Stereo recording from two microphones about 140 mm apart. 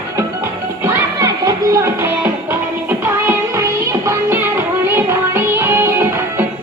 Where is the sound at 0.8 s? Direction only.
20° right (ahead or behind).